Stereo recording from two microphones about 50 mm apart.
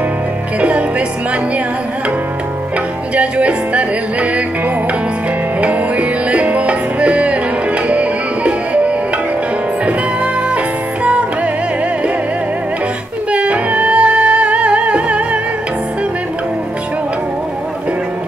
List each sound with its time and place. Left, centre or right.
0.6 s music: right
3.2 s music: right
5.6 s music: right
13.3 s music: right